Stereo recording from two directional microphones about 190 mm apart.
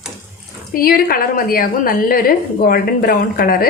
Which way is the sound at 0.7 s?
50° left (ahead or behind).